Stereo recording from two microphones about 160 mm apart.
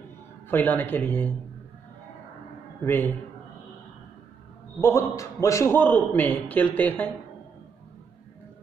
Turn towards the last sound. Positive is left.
turn(degrees=10)  # may be behind; listen again after turning